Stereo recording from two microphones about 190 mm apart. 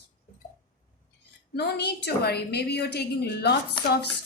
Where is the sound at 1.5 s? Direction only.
60° left (ahead or behind).